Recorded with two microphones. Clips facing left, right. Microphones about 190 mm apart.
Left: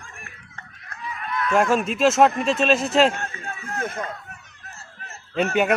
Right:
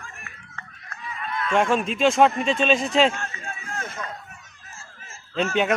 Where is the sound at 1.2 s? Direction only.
25° right (ahead or behind).